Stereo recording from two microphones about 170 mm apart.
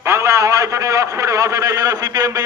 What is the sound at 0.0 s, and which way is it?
A man's voice, 15° right (ahead or behind).